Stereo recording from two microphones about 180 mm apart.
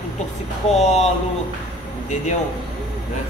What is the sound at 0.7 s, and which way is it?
Speech, 35° left (ahead or behind).